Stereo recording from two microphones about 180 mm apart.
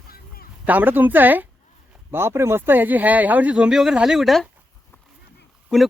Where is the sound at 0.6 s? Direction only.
10° right (ahead or behind).